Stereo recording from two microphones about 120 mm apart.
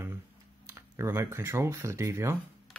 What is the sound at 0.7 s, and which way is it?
Speech, 20° right (ahead or behind).